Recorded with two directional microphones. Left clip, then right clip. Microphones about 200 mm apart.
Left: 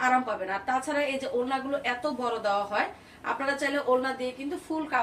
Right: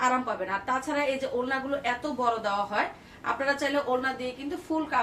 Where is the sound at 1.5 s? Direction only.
15° right (ahead or behind).